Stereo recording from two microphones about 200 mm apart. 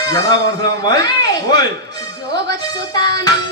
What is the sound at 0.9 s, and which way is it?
Speech, 20° left (ahead or behind).